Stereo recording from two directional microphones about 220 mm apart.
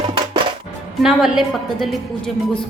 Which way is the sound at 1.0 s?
Centre (ahead or behind).